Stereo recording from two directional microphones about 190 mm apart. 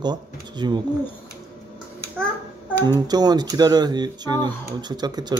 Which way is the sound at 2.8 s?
20° right (ahead or behind).